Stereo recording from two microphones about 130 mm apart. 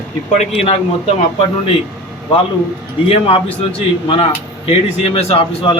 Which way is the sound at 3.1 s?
45° left (ahead or behind).